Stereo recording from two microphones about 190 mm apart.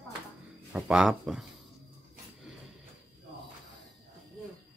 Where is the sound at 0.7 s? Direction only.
5° right (ahead or behind).